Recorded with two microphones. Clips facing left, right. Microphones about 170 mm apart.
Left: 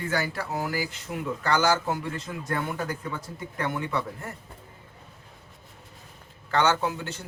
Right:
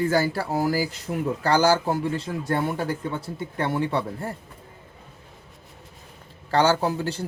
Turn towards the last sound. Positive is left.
turn(degrees=-35)  # may be behind; listen again after turning